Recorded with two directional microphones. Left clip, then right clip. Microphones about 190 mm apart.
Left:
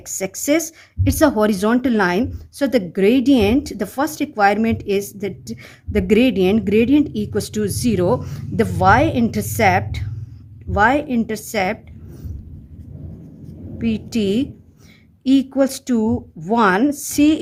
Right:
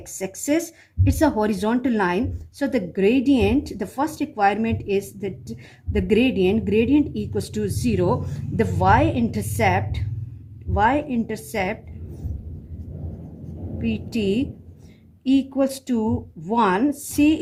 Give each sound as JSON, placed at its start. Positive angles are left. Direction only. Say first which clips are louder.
{"t": 0.0, "sound": "speech", "louder": "left 5 dB", "side_deg": 40}
{"t": 13.7, "sound": "speech", "louder": "left 4 dB", "side_deg": 45}